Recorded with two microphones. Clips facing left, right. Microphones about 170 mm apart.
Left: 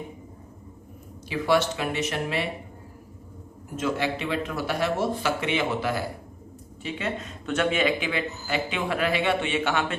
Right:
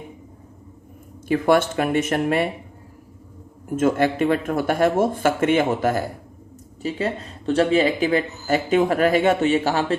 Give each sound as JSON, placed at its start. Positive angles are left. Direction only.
{"t": 1.3, "sound": "speech", "side_deg": -50}
{"t": 3.8, "sound": "speech", "side_deg": -50}
{"t": 6.8, "sound": "a man's voice", "side_deg": -35}